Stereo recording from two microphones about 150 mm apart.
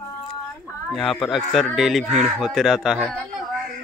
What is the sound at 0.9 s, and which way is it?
Speech, centre (ahead or behind).